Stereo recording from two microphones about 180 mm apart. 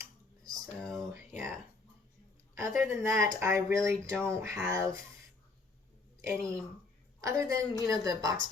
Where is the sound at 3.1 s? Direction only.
15° right (ahead or behind).